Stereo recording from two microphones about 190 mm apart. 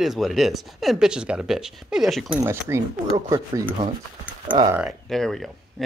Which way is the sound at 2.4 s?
15° right (ahead or behind).